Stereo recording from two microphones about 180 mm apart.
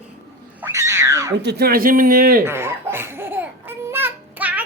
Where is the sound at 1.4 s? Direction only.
60° right (ahead or behind).